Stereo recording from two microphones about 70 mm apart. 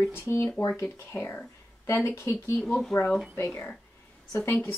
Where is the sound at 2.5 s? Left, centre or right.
Centre.